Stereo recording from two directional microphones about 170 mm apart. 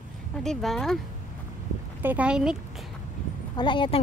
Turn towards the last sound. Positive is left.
turn(degrees=30)  # may be behind; listen again after turning